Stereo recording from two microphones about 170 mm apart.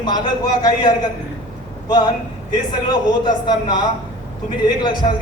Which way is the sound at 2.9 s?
25° left (ahead or behind).